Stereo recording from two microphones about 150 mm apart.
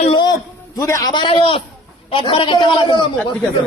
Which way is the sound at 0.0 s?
35° left (ahead or behind).